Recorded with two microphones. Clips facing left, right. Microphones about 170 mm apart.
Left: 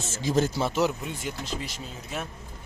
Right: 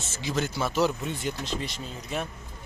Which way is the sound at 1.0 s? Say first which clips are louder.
Right 2 dB; 5° left (ahead or behind).